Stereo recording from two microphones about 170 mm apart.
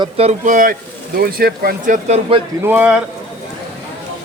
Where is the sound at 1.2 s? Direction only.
65° right (ahead or behind).